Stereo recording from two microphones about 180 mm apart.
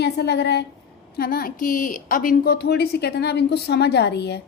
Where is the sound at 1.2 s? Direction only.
55° left (ahead or behind).